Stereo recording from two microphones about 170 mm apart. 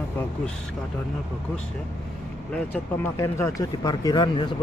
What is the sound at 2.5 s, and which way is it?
Speech, 10° left (ahead or behind).